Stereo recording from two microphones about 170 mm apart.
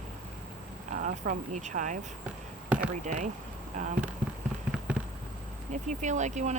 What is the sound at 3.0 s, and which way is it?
Speech, 45° right (ahead or behind).